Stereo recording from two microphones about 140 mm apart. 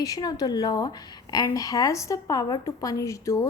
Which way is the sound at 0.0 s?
25° left (ahead or behind).